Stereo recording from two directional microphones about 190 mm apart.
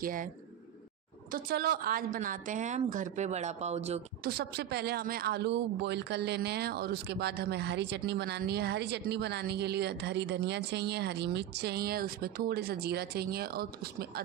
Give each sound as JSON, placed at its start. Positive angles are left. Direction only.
{"t": 0.0, "sound": "speech", "side_deg": -45}
{"t": 1.3, "sound": "a woman's voice", "side_deg": -55}
{"t": 4.2, "sound": "speech", "side_deg": -55}